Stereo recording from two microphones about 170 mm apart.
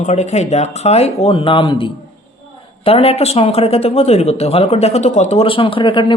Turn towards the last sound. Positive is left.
turn(degrees=30)  # may be behind; listen again after turning